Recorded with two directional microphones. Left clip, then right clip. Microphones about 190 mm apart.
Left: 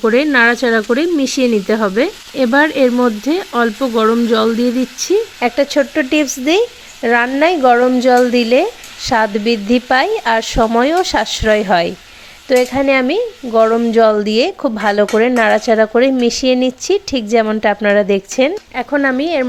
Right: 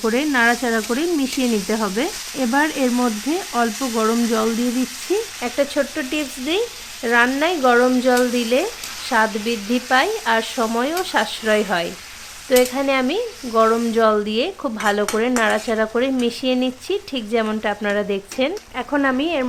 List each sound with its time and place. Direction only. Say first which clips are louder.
0.0 s speech: left 7 dB; 25° left (ahead or behind)
18.8 s speech: left 5 dB; 20° left (ahead or behind)